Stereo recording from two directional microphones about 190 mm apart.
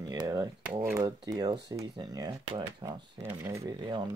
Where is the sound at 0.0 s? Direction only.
20° right (ahead or behind).